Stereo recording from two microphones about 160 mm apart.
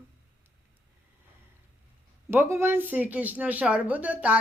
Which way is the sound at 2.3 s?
15° right (ahead or behind).